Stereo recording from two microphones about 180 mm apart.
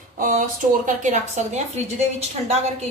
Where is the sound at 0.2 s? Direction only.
45° right (ahead or behind).